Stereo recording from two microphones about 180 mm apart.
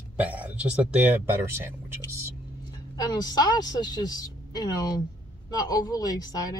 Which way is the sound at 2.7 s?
20° left (ahead or behind).